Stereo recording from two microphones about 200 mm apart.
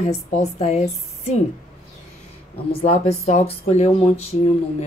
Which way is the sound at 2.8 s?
30° left (ahead or behind).